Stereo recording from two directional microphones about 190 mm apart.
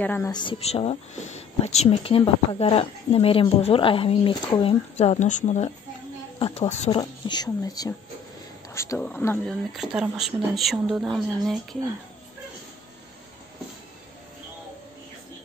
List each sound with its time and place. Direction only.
0.0 s speech: 10° left (ahead or behind)
0.3 s speech: 25° left (ahead or behind)
7.0 s speech: 20° left (ahead or behind)
9.8 s speech: 5° right (ahead or behind)